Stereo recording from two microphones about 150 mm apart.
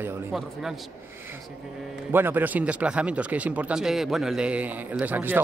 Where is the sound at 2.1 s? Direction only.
15° right (ahead or behind).